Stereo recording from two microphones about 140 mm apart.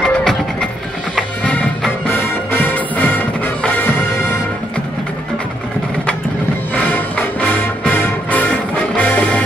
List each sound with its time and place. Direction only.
0.0 s music: 5° left (ahead or behind)
6.7 s music: 10° left (ahead or behind)